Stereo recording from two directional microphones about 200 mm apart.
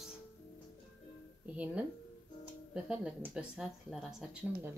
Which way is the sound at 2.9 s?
5° right (ahead or behind).